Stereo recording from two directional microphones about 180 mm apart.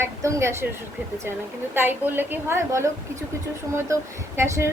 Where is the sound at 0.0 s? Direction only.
15° right (ahead or behind).